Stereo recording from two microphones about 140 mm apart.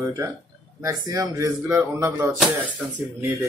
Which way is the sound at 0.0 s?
20° right (ahead or behind).